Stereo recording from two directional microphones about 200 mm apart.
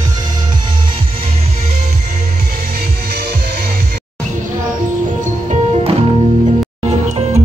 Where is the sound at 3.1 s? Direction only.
50° right (ahead or behind).